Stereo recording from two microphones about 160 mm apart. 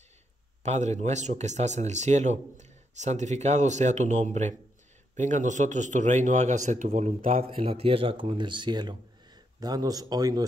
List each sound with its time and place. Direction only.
0.7 s speech: 45° right (ahead or behind)
7.3 s speech: 35° right (ahead or behind)